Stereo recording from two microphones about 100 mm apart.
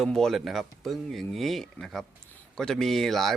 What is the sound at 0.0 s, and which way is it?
Speech, 5° left (ahead or behind).